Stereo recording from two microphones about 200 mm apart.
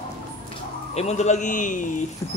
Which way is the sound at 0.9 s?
35° left (ahead or behind).